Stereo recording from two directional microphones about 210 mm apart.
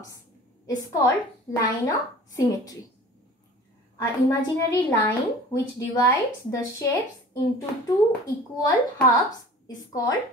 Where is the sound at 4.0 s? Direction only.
15° left (ahead or behind).